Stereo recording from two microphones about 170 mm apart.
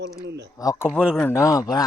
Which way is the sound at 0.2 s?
80° right.